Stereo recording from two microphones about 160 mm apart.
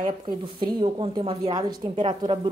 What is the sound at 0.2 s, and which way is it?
A woman's voice, 30° right (ahead or behind).